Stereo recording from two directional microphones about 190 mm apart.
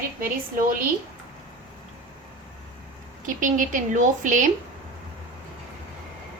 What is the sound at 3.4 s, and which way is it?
Speech, 45° right (ahead or behind).